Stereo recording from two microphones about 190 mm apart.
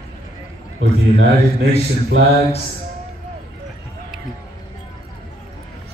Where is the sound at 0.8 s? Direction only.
70° right (ahead or behind).